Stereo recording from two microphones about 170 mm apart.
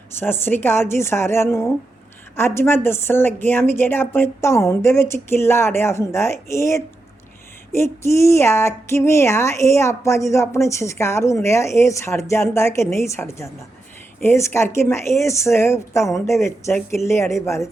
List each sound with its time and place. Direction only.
0.2 s speech: 10° left (ahead or behind)